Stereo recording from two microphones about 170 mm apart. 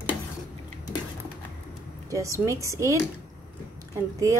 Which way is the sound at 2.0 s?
20° right (ahead or behind).